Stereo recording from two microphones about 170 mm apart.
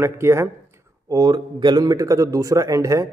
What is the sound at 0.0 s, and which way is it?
Speech, 15° right (ahead or behind).